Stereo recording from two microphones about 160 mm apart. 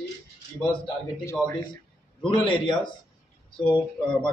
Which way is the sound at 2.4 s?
30° left (ahead or behind).